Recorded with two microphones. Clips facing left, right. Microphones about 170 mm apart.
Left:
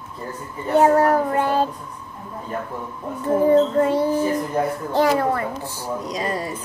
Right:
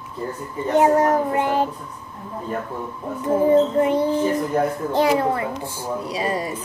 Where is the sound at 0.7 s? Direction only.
20° right (ahead or behind).